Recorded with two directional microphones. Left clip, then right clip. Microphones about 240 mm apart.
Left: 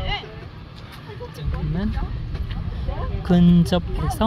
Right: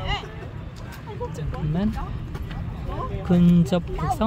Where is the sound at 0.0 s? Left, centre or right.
Right.